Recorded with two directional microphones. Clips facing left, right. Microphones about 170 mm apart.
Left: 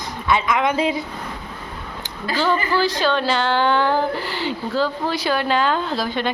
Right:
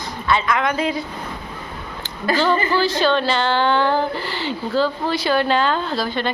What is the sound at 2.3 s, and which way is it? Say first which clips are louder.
Speech: right 2 dB; 10° left (ahead or behind).